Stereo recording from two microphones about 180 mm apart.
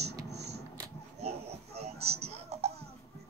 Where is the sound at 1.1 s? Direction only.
35° right (ahead or behind).